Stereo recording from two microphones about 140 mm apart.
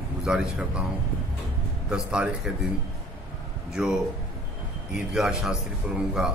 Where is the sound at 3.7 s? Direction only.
5° right (ahead or behind).